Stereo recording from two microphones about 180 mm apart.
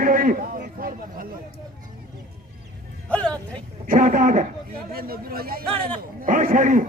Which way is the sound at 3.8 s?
45° right (ahead or behind).